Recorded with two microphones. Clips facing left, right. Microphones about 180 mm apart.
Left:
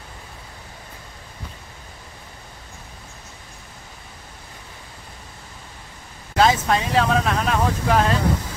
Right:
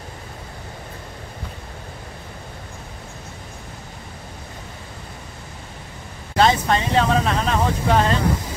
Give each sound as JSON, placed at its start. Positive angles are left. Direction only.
{"t": 6.3, "sound": "speech", "side_deg": 5}